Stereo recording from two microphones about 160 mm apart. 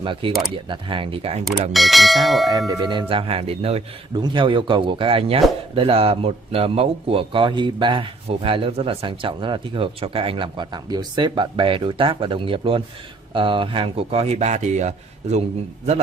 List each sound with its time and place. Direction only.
0.0 s speech: 30° right (ahead or behind)
1.7 s speech: centre (ahead or behind)
2.7 s speech: 25° right (ahead or behind); by 15.4 s 45° right (ahead or behind)